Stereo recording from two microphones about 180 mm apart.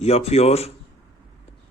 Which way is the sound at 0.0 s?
35° left (ahead or behind).